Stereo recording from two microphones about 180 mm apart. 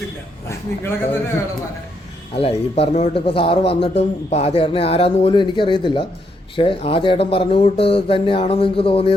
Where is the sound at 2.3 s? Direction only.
30° left (ahead or behind).